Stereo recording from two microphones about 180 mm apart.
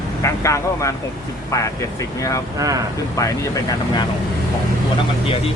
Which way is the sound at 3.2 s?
20° left (ahead or behind).